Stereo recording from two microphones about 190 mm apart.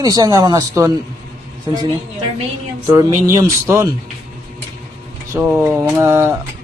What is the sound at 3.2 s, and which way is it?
Speech, 15° right (ahead or behind).